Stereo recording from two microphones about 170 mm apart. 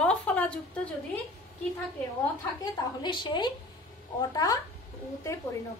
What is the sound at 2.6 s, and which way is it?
A woman's voice, 25° left (ahead or behind).